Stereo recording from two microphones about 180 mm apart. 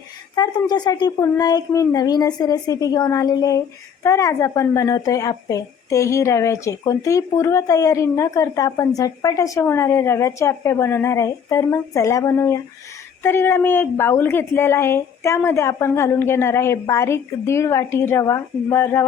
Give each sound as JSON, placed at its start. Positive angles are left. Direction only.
{"t": 0.3, "sound": "a woman's voice", "side_deg": 25}